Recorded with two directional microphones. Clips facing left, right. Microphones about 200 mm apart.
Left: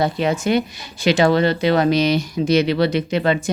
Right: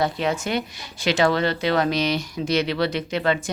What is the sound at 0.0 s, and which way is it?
Speech, 5° left (ahead or behind).